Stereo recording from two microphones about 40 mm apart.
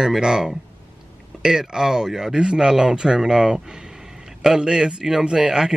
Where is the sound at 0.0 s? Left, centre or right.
Centre.